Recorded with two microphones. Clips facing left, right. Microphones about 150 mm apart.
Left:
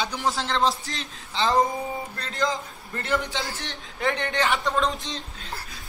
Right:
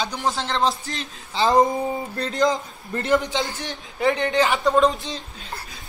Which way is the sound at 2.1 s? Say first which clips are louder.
Right 7 dB; 20° right (ahead or behind).